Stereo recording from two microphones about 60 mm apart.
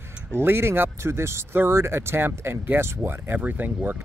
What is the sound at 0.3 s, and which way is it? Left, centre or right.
Speech, right.